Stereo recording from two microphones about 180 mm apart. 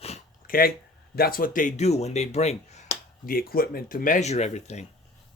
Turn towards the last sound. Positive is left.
turn(degrees=40)  # may be behind; listen again after turning